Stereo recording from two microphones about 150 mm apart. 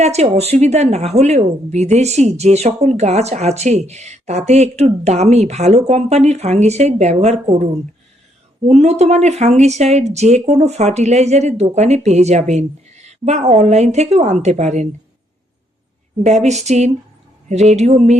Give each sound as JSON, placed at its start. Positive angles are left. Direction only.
{"t": 0.0, "sound": "a woman's voice", "side_deg": -45}
{"t": 16.2, "sound": "a woman's voice", "side_deg": -50}